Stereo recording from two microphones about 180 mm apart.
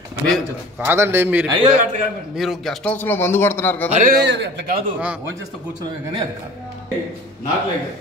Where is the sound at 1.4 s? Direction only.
25° right (ahead or behind).